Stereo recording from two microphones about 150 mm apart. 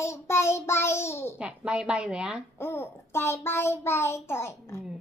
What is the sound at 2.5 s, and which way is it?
A child's voice, 15° left (ahead or behind).